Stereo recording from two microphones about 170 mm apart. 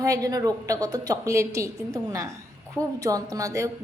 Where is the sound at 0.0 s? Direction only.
20° right (ahead or behind).